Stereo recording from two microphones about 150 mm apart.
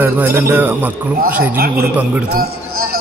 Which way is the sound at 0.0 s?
15° right (ahead or behind).